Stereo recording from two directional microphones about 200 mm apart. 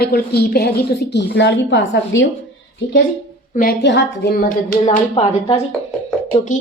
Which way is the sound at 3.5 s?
55° left (ahead or behind).